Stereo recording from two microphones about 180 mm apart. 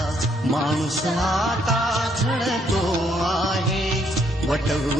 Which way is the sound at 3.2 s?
Centre (ahead or behind).